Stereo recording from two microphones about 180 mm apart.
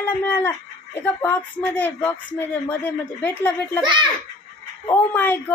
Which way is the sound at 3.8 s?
25° right (ahead or behind).